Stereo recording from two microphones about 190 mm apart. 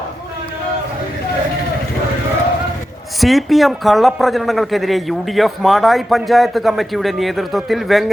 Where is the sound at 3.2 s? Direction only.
Centre (ahead or behind).